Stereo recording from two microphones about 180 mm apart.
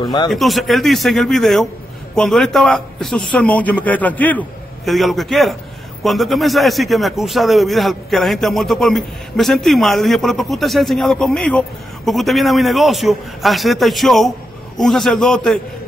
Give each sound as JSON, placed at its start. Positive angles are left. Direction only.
{"t": 0.0, "sound": "speech", "side_deg": 25}
{"t": 0.3, "sound": "a man's voice", "side_deg": 0}